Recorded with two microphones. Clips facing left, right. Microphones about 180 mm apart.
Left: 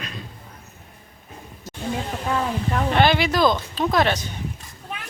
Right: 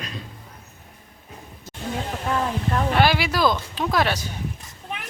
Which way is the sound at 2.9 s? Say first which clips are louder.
Left 3 dB; 5° right (ahead or behind).